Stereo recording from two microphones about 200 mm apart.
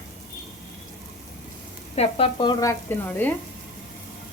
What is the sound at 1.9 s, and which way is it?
Sizzle, 30° left (ahead or behind).